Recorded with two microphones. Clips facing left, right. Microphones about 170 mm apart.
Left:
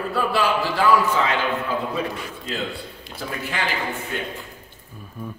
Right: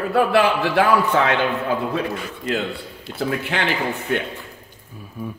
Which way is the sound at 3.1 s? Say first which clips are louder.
Right 6 dB; 70° right (ahead or behind).